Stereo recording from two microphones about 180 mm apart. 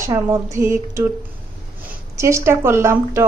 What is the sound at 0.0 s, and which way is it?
A woman's voice, 15° right (ahead or behind).